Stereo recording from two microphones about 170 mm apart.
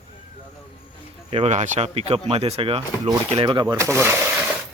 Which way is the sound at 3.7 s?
15° right (ahead or behind).